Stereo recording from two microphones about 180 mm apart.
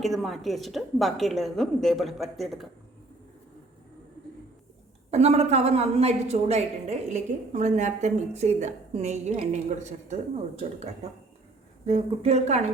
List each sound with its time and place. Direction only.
0.0 s a woman's voice: centre (ahead or behind)
5.1 s a woman's voice: 35° right (ahead or behind)